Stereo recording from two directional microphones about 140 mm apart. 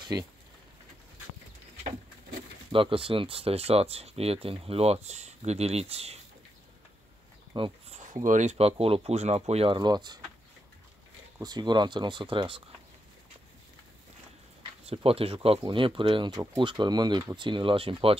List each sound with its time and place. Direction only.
0.0 s speech: 30° right (ahead or behind)
2.7 s speech: 40° right (ahead or behind)
7.5 s speech: 35° right (ahead or behind)
7.9 s speech: 60° right (ahead or behind)
9.8 s speech: 30° right (ahead or behind)
11.4 s speech: 30° right (ahead or behind)
14.6 s speech: 45° right (ahead or behind)